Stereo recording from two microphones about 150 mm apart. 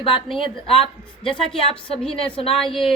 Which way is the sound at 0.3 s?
35° left (ahead or behind).